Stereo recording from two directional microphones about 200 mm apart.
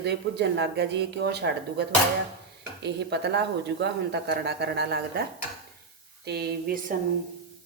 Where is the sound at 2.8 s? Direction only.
60° right (ahead or behind).